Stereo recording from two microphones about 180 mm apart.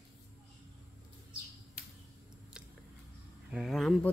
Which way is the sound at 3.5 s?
5° right (ahead or behind).